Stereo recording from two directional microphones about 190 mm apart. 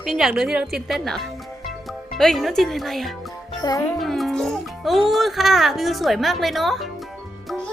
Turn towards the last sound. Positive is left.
turn(degrees=0)  # may be behind; listen again after turning